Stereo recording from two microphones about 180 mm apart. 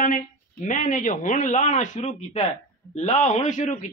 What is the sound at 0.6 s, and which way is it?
Speech, 45° left (ahead or behind).